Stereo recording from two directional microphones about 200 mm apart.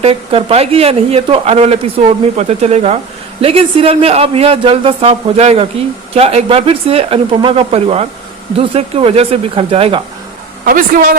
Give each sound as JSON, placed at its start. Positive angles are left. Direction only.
{"t": 0.0, "sound": "speech", "side_deg": -30}
{"t": 10.7, "sound": "a woman's voice", "side_deg": -45}